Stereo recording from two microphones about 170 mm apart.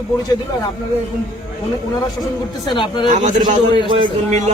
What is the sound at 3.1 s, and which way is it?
Speech, 45° right (ahead or behind).